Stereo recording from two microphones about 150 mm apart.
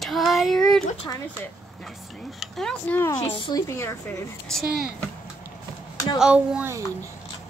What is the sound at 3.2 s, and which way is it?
Speech, 35° left (ahead or behind).